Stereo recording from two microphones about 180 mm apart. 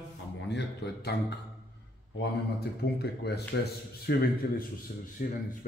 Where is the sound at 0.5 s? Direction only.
70° left (ahead or behind).